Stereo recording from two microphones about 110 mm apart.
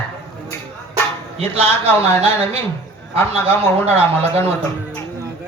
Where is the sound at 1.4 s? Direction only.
65° right (ahead or behind).